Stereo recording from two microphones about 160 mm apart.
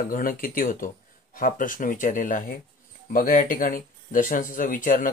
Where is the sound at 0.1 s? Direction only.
60° left (ahead or behind).